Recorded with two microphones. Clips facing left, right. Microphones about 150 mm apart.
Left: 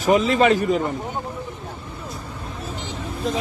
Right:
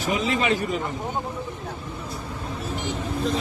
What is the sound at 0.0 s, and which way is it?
Speech, 45° left (ahead or behind).